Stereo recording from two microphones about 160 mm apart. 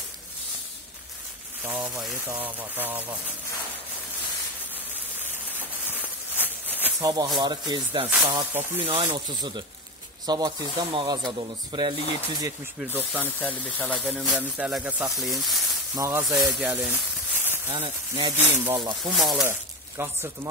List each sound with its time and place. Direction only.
1.6 s speech: 5° right (ahead or behind)
5.9 s a sound: 10° right (ahead or behind)
7.0 s speech: 25° right (ahead or behind)
8.1 s speech: 15° right (ahead or behind)
8.8 s speech: 35° right (ahead or behind); by 13.2 s 10° right (ahead or behind)
13.2 s speech: 10° left (ahead or behind)
14.2 s speech: 5° right (ahead or behind)
15.9 s speech: 15° right (ahead or behind)
16.6 s a sound: 10° right (ahead or behind)
17.6 s speech: 35° right (ahead or behind)
18.4 s speech: 15° right (ahead or behind)
18.8 s speech: 25° right (ahead or behind)
19.1 s speech: centre (ahead or behind)
20.0 s speech: 15° right (ahead or behind)